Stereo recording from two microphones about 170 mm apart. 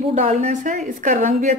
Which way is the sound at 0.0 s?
40° right (ahead or behind).